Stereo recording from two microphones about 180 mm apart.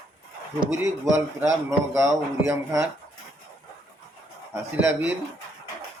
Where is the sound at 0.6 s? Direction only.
15° right (ahead or behind).